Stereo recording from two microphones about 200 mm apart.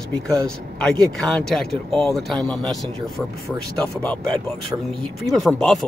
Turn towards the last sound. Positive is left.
turn(degrees=0)  # may be behind; listen again after turning